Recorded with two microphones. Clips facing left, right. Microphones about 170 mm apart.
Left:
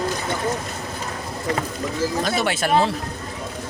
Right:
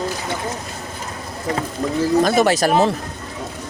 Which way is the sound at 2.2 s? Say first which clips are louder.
Right 7 dB; 45° right (ahead or behind).